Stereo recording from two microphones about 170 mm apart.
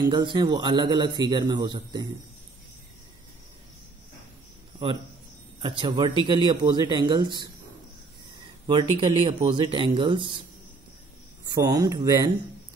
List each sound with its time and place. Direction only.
0.0 s a man's voice: 25° right (ahead or behind)
5.6 s a man's voice: 30° right (ahead or behind)
11.4 s a man's voice: 20° right (ahead or behind)